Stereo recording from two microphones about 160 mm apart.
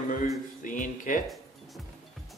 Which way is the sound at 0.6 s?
55° left (ahead or behind).